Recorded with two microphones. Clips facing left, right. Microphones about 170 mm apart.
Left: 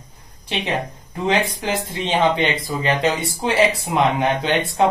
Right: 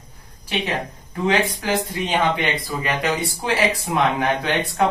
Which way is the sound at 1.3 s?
25° left (ahead or behind).